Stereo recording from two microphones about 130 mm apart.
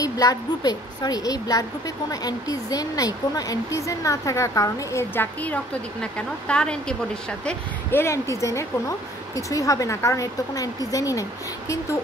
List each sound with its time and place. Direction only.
0.0 s a woman's voice: 30° left (ahead or behind); by 7.5 s 5° left (ahead or behind)
7.9 s a woman's voice: 20° left (ahead or behind)